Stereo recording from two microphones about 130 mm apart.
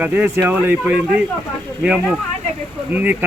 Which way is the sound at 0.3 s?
20° right (ahead or behind).